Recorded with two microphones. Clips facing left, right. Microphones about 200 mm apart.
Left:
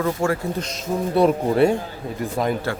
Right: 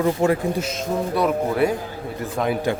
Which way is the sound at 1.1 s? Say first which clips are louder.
Left 5 dB; 25° left (ahead or behind).